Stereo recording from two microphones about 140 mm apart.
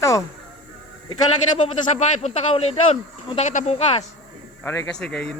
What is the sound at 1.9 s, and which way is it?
Speech, 50° left (ahead or behind).